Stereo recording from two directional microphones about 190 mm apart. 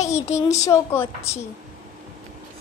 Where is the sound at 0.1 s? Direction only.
15° left (ahead or behind).